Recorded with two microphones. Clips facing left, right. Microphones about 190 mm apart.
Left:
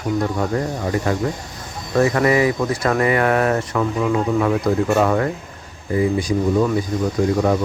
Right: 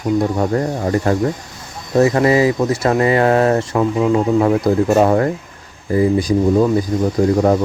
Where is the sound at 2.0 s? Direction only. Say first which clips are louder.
Right 3 dB; 25° right (ahead or behind).